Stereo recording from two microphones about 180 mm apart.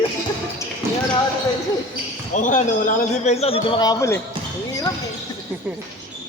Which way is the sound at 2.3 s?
45° left (ahead or behind).